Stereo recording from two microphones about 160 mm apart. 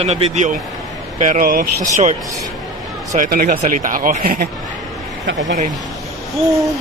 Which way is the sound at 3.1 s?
55° right (ahead or behind).